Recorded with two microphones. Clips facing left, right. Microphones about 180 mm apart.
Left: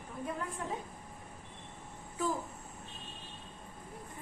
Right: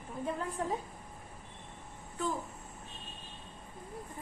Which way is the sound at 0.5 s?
35° right (ahead or behind).